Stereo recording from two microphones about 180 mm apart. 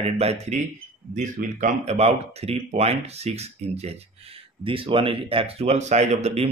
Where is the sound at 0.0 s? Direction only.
35° right (ahead or behind).